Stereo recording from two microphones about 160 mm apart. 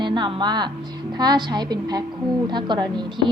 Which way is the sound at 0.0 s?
30° right (ahead or behind).